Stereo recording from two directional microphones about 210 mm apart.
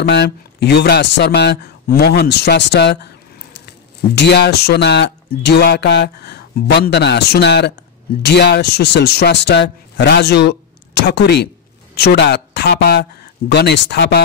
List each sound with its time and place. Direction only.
0.0 s speech: 55° left (ahead or behind)
4.1 s speech: 55° left (ahead or behind)